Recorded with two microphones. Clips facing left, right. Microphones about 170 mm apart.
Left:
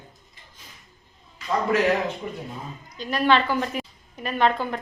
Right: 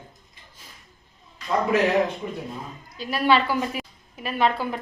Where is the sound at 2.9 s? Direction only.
5° right (ahead or behind).